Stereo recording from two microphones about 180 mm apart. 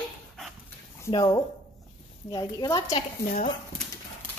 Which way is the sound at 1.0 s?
25° left (ahead or behind).